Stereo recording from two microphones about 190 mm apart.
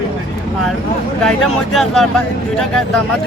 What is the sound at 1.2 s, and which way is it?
Speech, centre (ahead or behind).